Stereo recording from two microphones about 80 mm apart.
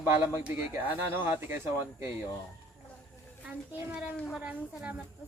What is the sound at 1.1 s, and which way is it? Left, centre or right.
Speech, right.